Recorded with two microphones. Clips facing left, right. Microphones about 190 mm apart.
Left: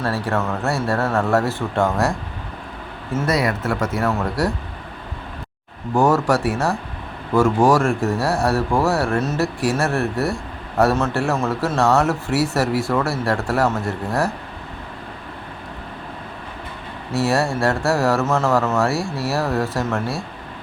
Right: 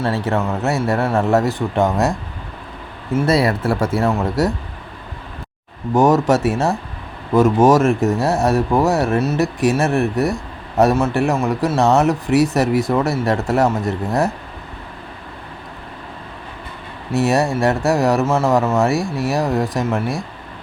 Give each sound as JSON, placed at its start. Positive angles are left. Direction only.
{"t": 0.0, "sound": "a man's voice", "side_deg": -20}
{"t": 3.2, "sound": "a man's voice", "side_deg": -30}
{"t": 5.9, "sound": "a man's voice", "side_deg": -20}
{"t": 17.1, "sound": "a man's voice", "side_deg": -20}